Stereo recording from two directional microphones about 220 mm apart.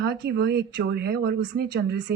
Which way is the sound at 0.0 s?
50° right (ahead or behind).